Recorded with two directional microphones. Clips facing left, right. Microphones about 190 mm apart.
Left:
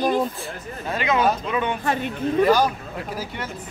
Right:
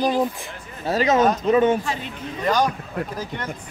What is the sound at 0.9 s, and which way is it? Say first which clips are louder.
Speech: right 3 dB; 40° right (ahead or behind).